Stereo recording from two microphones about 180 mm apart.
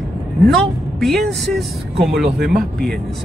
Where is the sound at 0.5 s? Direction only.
Centre (ahead or behind).